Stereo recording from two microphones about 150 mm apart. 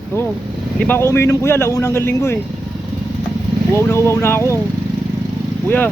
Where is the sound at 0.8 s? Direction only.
15° left (ahead or behind).